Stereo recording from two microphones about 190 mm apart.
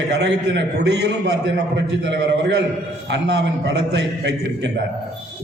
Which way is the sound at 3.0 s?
60° right (ahead or behind).